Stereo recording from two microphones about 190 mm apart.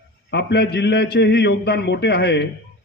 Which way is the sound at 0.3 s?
60° left (ahead or behind).